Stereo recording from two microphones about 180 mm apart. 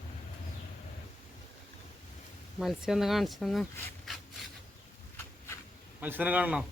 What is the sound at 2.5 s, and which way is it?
Speech, centre (ahead or behind).